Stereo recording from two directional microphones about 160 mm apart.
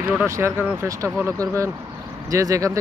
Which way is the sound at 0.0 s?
15° right (ahead or behind).